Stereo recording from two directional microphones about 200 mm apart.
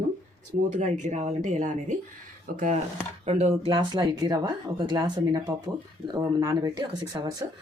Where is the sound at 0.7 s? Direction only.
35° right (ahead or behind).